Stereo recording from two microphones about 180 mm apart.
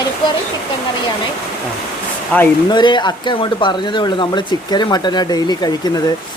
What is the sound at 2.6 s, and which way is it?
Speech, 25° left (ahead or behind).